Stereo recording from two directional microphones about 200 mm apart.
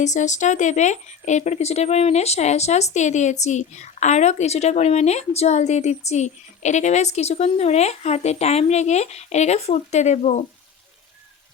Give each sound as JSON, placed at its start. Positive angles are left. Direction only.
{"t": 0.0, "sound": "speech", "side_deg": 35}